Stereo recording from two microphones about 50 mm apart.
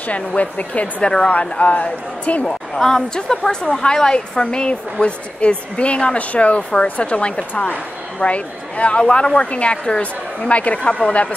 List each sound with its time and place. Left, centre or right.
0.4 s a woman's voice: left
2.4 s a woman's voice: centre